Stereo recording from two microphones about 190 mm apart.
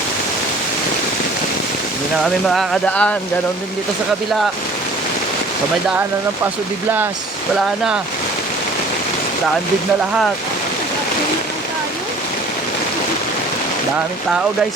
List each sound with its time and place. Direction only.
2.2 s speech: centre (ahead or behind)